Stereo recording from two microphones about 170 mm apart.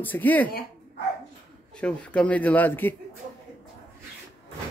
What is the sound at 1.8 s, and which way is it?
Speech, 5° left (ahead or behind).